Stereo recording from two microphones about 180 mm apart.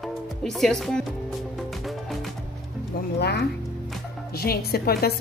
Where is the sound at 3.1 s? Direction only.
65° left (ahead or behind).